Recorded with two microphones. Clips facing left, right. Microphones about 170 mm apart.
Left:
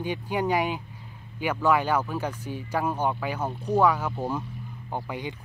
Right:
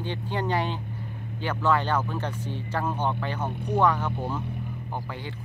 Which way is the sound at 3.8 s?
10° left (ahead or behind).